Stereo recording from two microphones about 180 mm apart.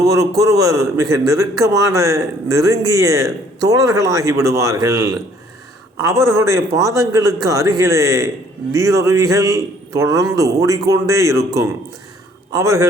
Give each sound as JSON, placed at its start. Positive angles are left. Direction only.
{"t": 0.0, "sound": "speech", "side_deg": -20}